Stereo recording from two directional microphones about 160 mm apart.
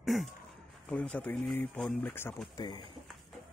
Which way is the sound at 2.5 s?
25° left (ahead or behind).